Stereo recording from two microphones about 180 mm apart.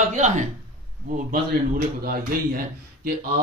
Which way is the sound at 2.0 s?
50° right (ahead or behind).